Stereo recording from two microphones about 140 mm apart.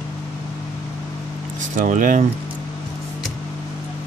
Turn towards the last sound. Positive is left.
turn(degrees=-70)  # may be behind; listen again after turning